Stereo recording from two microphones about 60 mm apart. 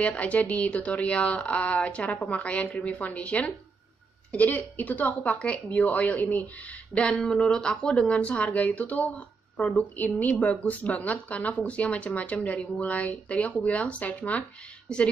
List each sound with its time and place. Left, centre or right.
0.0 s a woman's voice: left
14.9 s a woman's voice: centre